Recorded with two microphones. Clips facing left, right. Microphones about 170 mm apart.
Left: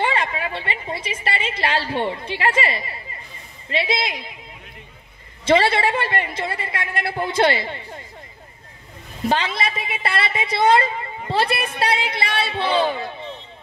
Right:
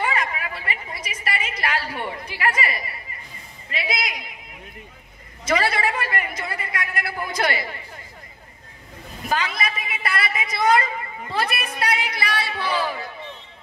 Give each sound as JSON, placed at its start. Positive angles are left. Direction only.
{"t": 0.0, "sound": "a woman's voice", "side_deg": 30}
{"t": 5.4, "sound": "a woman's voice", "side_deg": 30}
{"t": 9.3, "sound": "a woman's voice", "side_deg": 30}